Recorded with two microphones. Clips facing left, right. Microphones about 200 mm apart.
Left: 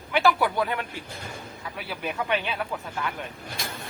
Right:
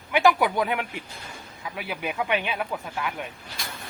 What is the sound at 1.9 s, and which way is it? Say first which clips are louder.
Speech: right 1 dB; 10° right (ahead or behind).